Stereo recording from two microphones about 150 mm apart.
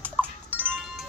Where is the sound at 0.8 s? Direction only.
Centre (ahead or behind).